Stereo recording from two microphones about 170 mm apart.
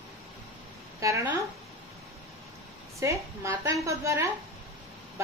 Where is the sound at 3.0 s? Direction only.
15° right (ahead or behind).